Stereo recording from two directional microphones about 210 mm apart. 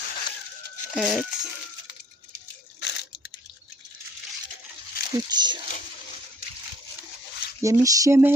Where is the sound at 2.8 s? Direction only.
55° left (ahead or behind).